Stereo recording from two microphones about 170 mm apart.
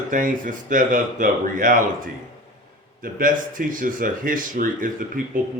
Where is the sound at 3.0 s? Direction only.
55° right (ahead or behind).